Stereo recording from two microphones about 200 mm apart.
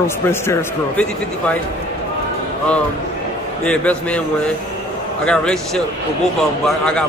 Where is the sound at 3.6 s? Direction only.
5° left (ahead or behind).